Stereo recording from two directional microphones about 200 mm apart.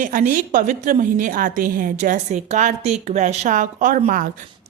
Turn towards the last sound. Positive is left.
turn(degrees=-40)  # may be behind; listen again after turning